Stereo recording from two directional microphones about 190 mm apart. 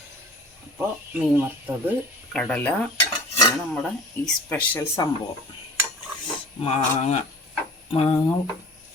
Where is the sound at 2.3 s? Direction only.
5° left (ahead or behind).